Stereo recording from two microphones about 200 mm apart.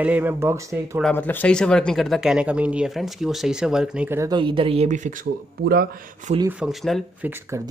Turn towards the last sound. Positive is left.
turn(degrees=-15)  # may be behind; listen again after turning